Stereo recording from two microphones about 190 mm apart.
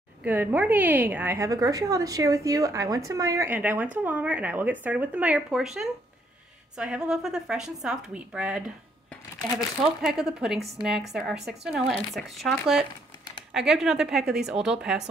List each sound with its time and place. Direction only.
0.2 s a woman's voice: 10° right (ahead or behind)
10.0 s speech: 5° right (ahead or behind)